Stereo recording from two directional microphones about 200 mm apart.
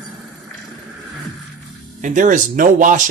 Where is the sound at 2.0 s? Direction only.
40° right (ahead or behind).